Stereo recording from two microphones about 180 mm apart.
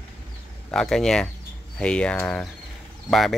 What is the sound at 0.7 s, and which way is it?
Speech, 5° left (ahead or behind).